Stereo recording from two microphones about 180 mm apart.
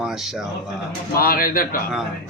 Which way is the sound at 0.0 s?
Centre (ahead or behind).